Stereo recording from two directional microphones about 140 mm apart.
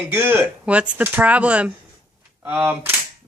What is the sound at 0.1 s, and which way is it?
A man's voice, 15° right (ahead or behind).